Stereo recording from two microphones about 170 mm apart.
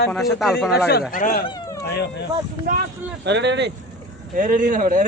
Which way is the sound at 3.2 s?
90° right.